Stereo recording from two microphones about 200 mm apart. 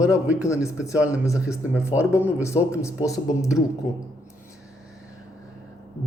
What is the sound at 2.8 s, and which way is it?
Speech, 15° left (ahead or behind).